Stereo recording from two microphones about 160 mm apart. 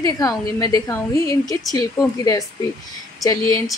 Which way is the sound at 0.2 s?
20° left (ahead or behind).